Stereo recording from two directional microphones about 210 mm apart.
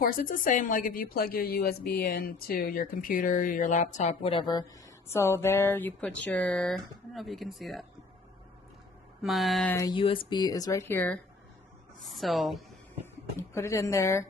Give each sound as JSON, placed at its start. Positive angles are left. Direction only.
{"t": 0.0, "sound": "a woman's voice", "side_deg": 40}
{"t": 9.2, "sound": "speech", "side_deg": 0}
{"t": 9.8, "sound": "speech", "side_deg": 20}
{"t": 13.0, "sound": "speech", "side_deg": 10}